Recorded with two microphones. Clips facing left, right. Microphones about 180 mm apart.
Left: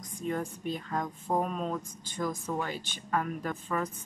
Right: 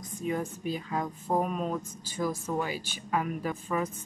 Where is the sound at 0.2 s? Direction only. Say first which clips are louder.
Right 1 dB; 5° right (ahead or behind).